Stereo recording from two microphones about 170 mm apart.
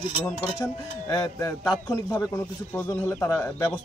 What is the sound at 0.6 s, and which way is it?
Speech, 20° left (ahead or behind).